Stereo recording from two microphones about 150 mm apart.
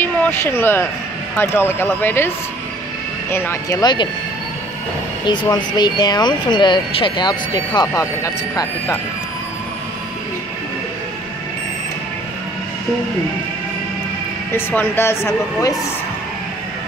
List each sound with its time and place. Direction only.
0.0 s speech: 15° left (ahead or behind); by 4.1 s 30° left (ahead or behind)
5.2 s speech: 30° left (ahead or behind)
14.5 s speech: 15° left (ahead or behind)